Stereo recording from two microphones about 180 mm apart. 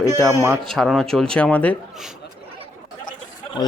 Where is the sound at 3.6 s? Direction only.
25° left (ahead or behind).